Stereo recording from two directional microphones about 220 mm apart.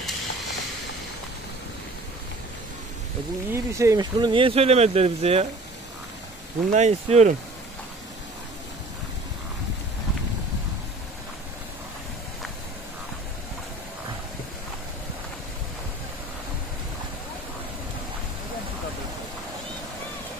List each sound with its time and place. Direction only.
0.0 s a sound: centre (ahead or behind)
3.5 s speech: 15° right (ahead or behind)
6.7 s speech: 30° right (ahead or behind)